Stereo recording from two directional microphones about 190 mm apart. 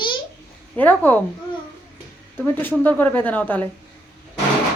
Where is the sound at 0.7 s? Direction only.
10° left (ahead or behind).